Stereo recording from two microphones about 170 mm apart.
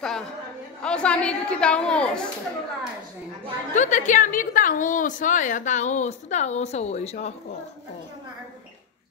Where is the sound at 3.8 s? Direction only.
45° left (ahead or behind).